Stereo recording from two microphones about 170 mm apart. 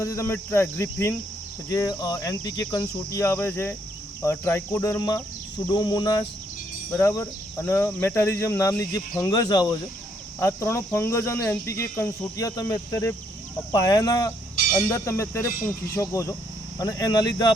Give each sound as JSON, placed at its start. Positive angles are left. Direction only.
{"t": 0.0, "sound": "speech", "side_deg": 15}
{"t": 1.7, "sound": "cricket", "side_deg": 20}
{"t": 4.2, "sound": "speech", "side_deg": 15}
{"t": 5.6, "sound": "cricket", "side_deg": 25}
{"t": 6.9, "sound": "speech", "side_deg": 10}
{"t": 13.7, "sound": "cricket", "side_deg": 20}
{"t": 14.8, "sound": "speech", "side_deg": 15}
{"t": 16.7, "sound": "cricket", "side_deg": 20}